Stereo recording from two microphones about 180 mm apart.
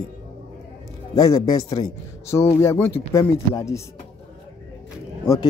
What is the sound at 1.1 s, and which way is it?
Speech, 20° left (ahead or behind).